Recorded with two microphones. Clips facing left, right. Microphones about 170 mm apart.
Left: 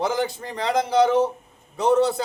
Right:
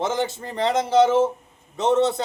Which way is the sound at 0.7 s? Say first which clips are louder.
Right 1 dB; 25° right (ahead or behind).